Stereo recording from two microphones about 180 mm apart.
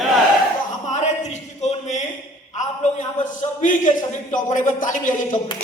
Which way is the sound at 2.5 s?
45° left (ahead or behind).